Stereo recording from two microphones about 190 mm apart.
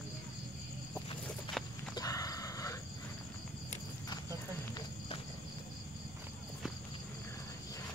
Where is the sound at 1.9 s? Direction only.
20° left (ahead or behind).